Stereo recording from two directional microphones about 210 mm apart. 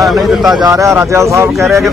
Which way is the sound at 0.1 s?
Centre (ahead or behind).